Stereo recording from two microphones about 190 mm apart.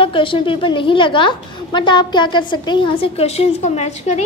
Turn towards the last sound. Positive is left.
turn(degrees=35)  # may be behind; listen again after turning